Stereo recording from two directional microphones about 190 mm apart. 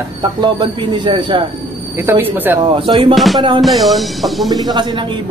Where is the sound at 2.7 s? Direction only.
30° right (ahead or behind).